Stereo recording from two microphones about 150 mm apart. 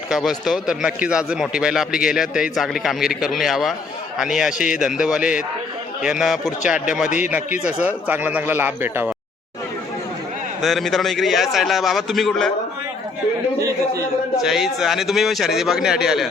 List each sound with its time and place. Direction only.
0.1 s a man's voice: centre (ahead or behind)
10.6 s a man's voice: centre (ahead or behind)
13.6 s a man's voice: 20° right (ahead or behind)
14.4 s a man's voice: centre (ahead or behind)